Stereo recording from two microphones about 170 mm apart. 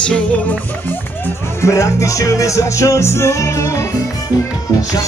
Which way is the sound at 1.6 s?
20° left (ahead or behind).